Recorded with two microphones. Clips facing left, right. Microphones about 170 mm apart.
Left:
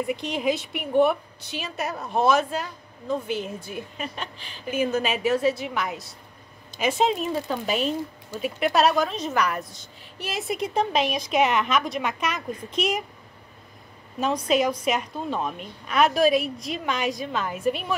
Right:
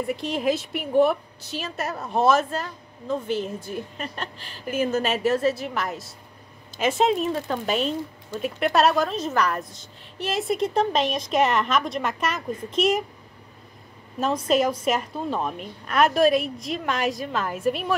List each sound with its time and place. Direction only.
0.0 s speech: centre (ahead or behind)
14.2 s speech: centre (ahead or behind)